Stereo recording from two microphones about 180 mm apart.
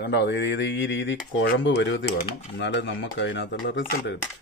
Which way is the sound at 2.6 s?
85° left.